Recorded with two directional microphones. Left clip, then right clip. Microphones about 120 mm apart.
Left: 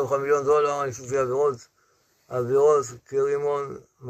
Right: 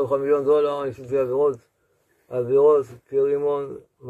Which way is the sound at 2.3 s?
5° right (ahead or behind).